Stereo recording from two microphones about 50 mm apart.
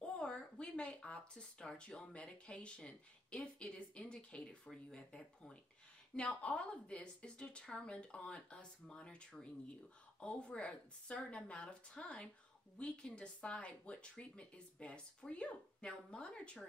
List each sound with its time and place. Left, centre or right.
0.0 s speech: left